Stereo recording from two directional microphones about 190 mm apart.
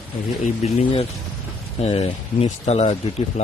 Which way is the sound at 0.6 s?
35° left (ahead or behind).